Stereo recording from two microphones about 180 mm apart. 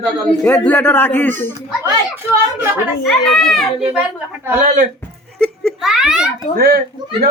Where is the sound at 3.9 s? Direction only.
10° right (ahead or behind).